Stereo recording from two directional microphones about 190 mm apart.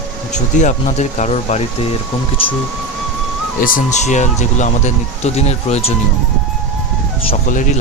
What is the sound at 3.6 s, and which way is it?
Speech, 40° left (ahead or behind).